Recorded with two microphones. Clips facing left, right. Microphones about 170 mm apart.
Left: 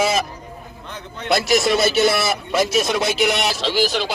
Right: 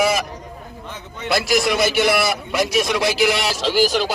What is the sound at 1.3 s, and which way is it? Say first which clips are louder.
A man's voice: left 2 dB; 25° left (ahead or behind).